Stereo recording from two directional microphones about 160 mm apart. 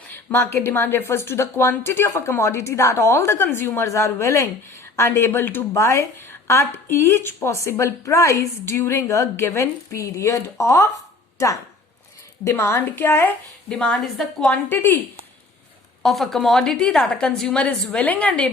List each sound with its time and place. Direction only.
0.1 s speech: 10° left (ahead or behind)
16.0 s a woman's voice: centre (ahead or behind)